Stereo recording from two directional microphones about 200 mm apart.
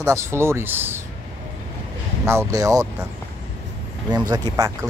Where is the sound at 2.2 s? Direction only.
15° right (ahead or behind).